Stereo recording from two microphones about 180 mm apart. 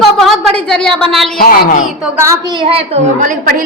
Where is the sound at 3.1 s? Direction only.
45° right (ahead or behind).